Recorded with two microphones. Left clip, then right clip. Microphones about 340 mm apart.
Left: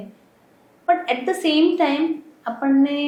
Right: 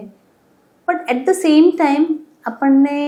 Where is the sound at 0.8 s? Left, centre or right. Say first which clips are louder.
Right 3 dB; right.